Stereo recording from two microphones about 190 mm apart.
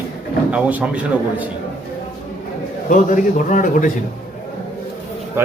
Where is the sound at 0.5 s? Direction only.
5° right (ahead or behind).